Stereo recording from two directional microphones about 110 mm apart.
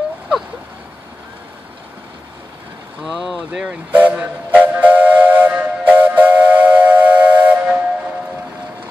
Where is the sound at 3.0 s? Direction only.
Centre (ahead or behind); by 4.2 s 15° right (ahead or behind).